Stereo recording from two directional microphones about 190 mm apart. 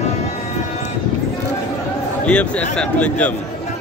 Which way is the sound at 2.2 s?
5° left (ahead or behind).